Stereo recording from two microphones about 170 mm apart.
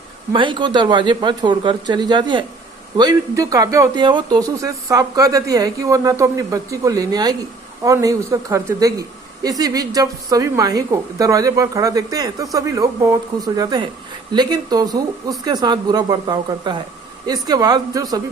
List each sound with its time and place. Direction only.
0.3 s speech: 30° right (ahead or behind)